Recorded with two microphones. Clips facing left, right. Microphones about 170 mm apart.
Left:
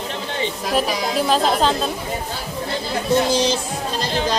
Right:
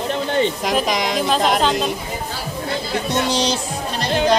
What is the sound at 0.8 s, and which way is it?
Speech, 80° right.